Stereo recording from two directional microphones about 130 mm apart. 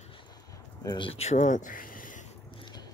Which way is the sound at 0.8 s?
40° left (ahead or behind).